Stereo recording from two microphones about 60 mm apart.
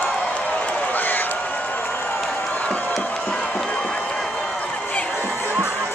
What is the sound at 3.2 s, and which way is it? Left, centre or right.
Crowd, centre.